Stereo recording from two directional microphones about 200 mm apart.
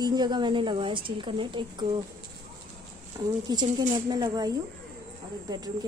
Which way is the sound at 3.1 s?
20° right (ahead or behind).